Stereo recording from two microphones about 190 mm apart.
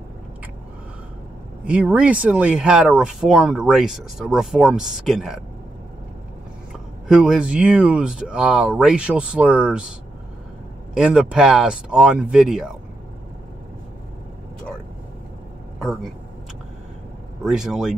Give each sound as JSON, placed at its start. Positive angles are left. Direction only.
{"t": 1.6, "sound": "speech", "side_deg": -5}
{"t": 6.7, "sound": "speech", "side_deg": -5}
{"t": 11.0, "sound": "speech", "side_deg": -5}
{"t": 15.8, "sound": "speech", "side_deg": 0}
{"t": 17.4, "sound": "speech", "side_deg": 0}